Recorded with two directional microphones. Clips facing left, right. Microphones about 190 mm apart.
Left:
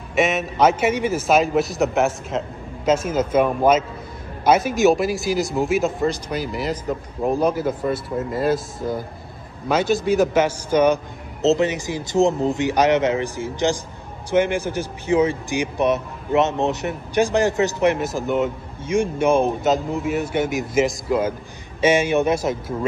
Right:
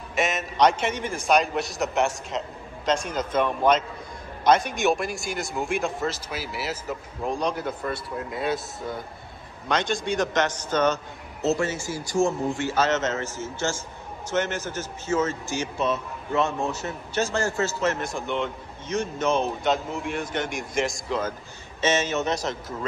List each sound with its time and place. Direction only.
0.1 s speech: centre (ahead or behind)
18.0 s speech: 5° left (ahead or behind)